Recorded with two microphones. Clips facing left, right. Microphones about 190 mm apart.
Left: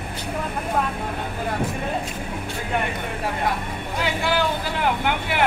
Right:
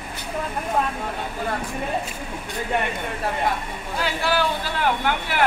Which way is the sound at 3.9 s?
15° left (ahead or behind).